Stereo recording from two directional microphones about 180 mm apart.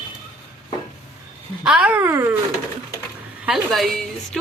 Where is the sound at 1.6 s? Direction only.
5° right (ahead or behind).